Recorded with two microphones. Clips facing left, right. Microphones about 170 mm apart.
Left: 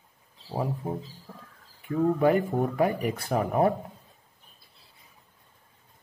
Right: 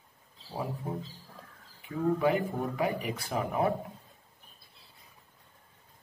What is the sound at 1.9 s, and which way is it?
Speech, 50° left (ahead or behind).